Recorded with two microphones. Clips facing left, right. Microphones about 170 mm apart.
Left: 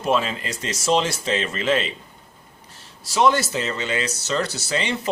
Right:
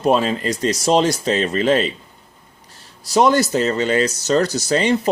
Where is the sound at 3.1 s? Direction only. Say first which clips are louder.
Right 4 dB; 40° right (ahead or behind).